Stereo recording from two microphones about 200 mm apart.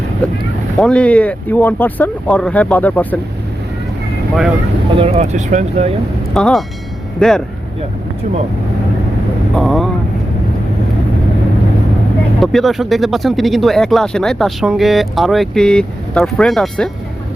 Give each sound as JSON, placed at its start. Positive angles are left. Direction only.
{"t": 0.8, "sound": "speech", "side_deg": 5}
{"t": 4.9, "sound": "speech", "side_deg": -30}
{"t": 6.3, "sound": "speech", "side_deg": 0}
{"t": 9.6, "sound": "speech", "side_deg": 0}
{"t": 12.4, "sound": "speech", "side_deg": 0}